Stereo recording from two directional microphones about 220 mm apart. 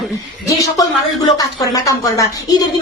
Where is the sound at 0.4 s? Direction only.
15° left (ahead or behind).